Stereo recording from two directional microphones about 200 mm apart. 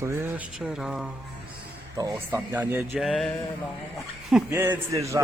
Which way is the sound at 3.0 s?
Centre (ahead or behind).